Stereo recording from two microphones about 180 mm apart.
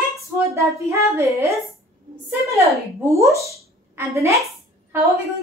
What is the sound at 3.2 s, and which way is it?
Speech, 15° right (ahead or behind).